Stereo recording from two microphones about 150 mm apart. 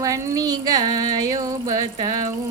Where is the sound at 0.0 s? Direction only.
20° right (ahead or behind).